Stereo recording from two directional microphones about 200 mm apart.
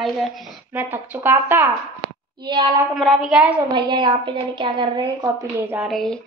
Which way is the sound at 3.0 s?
Centre (ahead or behind).